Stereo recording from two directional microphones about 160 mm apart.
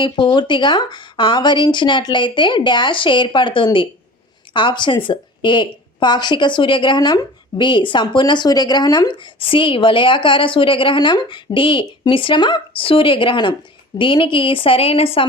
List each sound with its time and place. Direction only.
0.0 s speech: 30° left (ahead or behind)